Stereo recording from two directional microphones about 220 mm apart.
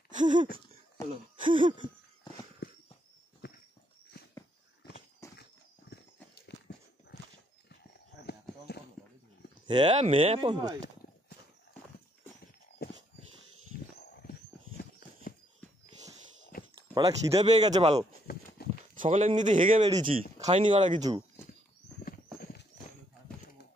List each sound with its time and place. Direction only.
0.3 s speech: 20° right (ahead or behind)
3.4 s dog: 50° left (ahead or behind)
5.2 s horse: 15° left (ahead or behind)
6.3 s horse: 50° left (ahead or behind)
8.3 s clip-clop: 45° left (ahead or behind)
9.7 s speech: 25° right (ahead or behind)
13.9 s wild animals: 45° left (ahead or behind)
14.8 s clip-clop: 40° left (ahead or behind)
16.5 s a sound: 40° left (ahead or behind)
16.9 s speech: 25° right (ahead or behind)
18.2 s a sound: 40° left (ahead or behind)
18.9 s speech: 30° right (ahead or behind)
22.4 s horse: 45° left (ahead or behind)